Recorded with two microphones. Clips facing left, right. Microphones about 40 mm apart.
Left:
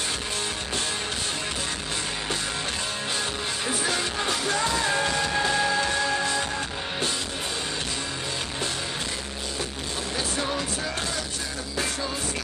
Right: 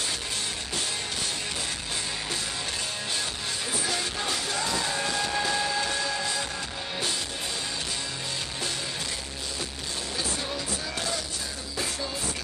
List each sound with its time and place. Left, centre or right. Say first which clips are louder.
3.6 s music: left 3 dB; left